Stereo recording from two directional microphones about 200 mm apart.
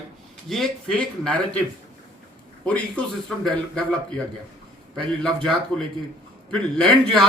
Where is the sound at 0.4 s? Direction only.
Centre (ahead or behind).